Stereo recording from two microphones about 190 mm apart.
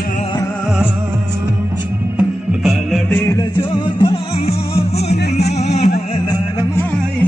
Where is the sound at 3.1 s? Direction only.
20° left (ahead or behind); by 5.9 s 35° left (ahead or behind).